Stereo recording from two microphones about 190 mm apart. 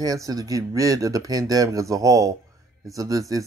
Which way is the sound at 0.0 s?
20° right (ahead or behind).